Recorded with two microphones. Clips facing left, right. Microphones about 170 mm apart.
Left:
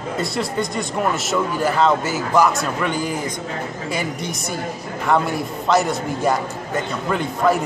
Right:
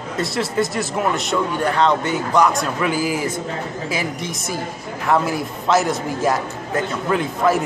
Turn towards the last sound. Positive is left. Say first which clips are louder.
# right 1 dB
turn(degrees=0)  # may be behind; listen again after turning